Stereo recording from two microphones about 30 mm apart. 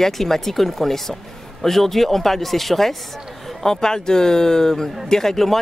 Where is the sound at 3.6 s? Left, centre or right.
Centre.